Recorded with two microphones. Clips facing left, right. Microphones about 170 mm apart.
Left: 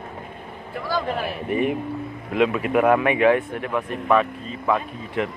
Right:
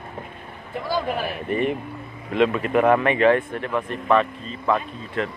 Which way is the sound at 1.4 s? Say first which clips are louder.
Left 2 dB; 10° left (ahead or behind).